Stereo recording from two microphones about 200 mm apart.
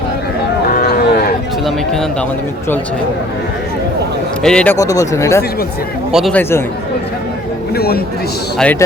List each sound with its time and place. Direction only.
0.7 s a sound: 50° left (ahead or behind)
1.6 s speech: centre (ahead or behind)
4.4 s speech: 5° left (ahead or behind)
6.1 s speech: centre (ahead or behind)
7.8 s speech: 50° left (ahead or behind)
8.5 s speech: 5° left (ahead or behind)